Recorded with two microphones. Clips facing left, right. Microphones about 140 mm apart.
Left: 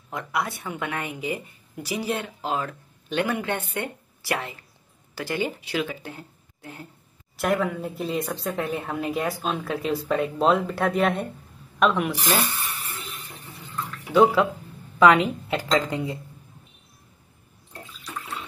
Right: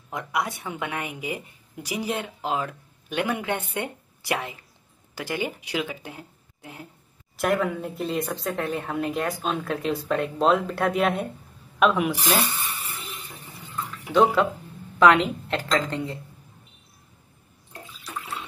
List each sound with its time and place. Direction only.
0.1 s a woman's voice: 15° right (ahead or behind)
7.3 s speech: centre (ahead or behind)
14.1 s speech: centre (ahead or behind)